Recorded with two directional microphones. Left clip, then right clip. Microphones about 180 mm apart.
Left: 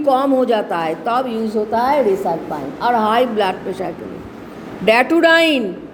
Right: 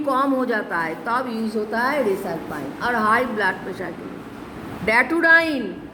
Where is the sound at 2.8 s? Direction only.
15° left (ahead or behind).